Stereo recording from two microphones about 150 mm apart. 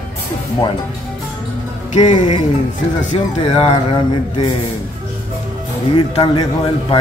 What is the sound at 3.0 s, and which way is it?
Speech, 55° left (ahead or behind).